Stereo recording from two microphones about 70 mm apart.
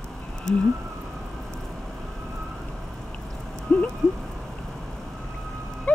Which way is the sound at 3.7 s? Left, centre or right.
Centre.